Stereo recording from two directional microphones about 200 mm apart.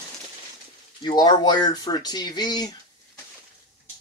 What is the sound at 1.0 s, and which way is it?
Speech, 20° left (ahead or behind).